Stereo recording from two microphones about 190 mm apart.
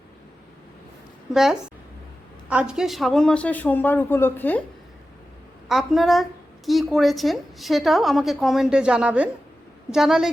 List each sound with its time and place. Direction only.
1.3 s a woman's voice: centre (ahead or behind)
5.6 s a woman's voice: centre (ahead or behind)